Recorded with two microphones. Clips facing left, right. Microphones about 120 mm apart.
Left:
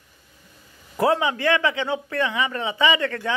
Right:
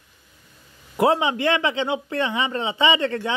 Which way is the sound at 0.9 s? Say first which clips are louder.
Right 1 dB; 20° right (ahead or behind).